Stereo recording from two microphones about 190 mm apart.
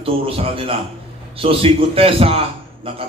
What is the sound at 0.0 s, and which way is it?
A man's voice, 30° right (ahead or behind).